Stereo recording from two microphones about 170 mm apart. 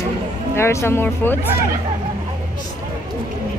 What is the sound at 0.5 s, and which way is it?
Speech, 15° left (ahead or behind).